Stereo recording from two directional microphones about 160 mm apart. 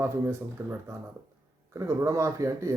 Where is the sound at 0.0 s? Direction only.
15° right (ahead or behind).